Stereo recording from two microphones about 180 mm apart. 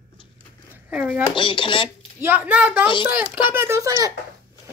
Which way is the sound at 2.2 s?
10° right (ahead or behind).